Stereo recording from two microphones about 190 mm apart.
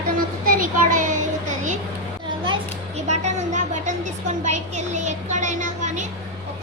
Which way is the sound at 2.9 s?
35° right (ahead or behind).